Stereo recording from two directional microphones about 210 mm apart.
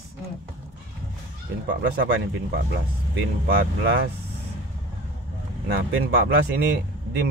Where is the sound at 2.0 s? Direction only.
55° right (ahead or behind).